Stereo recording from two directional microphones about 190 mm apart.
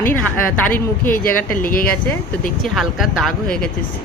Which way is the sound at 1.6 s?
50° left (ahead or behind).